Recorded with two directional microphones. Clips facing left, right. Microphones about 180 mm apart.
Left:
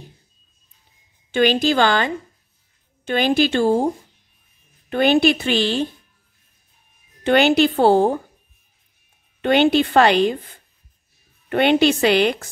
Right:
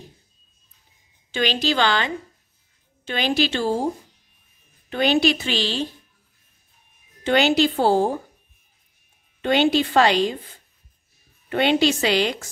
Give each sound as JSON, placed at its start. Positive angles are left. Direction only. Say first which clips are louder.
{"t": 1.3, "sound": "a woman's voice", "louder": "left 6 dB", "side_deg": 50}
{"t": 7.2, "sound": "a woman's voice", "louder": "left 3 dB", "side_deg": 55}
{"t": 9.4, "sound": "a woman's voice", "louder": "left 3 dB", "side_deg": 55}
{"t": 11.4, "sound": "a woman's voice", "louder": "left 3 dB", "side_deg": 55}